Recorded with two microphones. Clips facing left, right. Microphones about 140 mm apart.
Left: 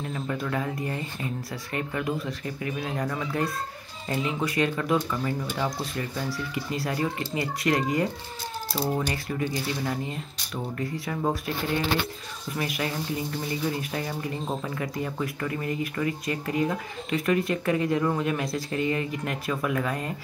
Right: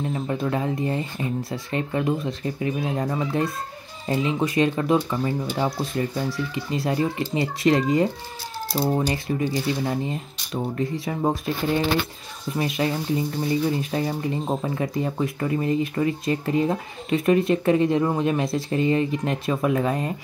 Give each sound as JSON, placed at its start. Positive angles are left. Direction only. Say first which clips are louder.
{"t": 0.1, "sound": "speech", "louder": "right 4 dB", "side_deg": -25}